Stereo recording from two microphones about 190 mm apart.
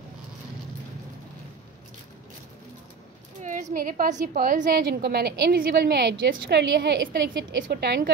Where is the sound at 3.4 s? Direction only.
45° right (ahead or behind).